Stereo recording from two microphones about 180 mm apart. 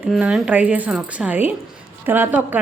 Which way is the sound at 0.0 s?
5° right (ahead or behind).